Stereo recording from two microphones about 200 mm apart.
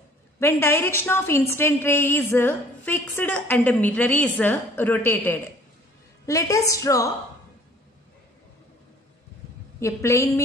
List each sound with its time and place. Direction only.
0.4 s a woman's voice: 15° left (ahead or behind)
9.8 s a woman's voice: 15° left (ahead or behind)